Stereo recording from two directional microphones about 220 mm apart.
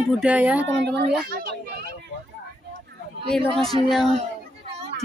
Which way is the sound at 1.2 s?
40° right (ahead or behind).